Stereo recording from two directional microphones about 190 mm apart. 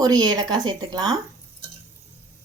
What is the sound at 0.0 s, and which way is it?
Speech, 20° right (ahead or behind).